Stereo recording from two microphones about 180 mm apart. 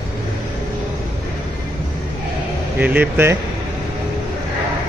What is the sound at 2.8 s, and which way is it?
Speech, 10° right (ahead or behind).